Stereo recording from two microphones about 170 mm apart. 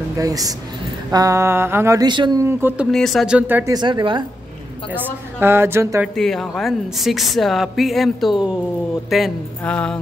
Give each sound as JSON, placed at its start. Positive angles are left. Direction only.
{"t": 0.2, "sound": "a sound", "side_deg": -20}
{"t": 2.4, "sound": "a woman's voice", "side_deg": -10}
{"t": 2.9, "sound": "speech", "side_deg": 0}
{"t": 3.7, "sound": "a sound", "side_deg": -25}
{"t": 4.9, "sound": "a woman's voice", "side_deg": -10}
{"t": 6.1, "sound": "speech", "side_deg": 5}